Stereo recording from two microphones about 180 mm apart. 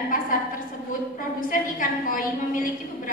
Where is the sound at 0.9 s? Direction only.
50° left (ahead or behind).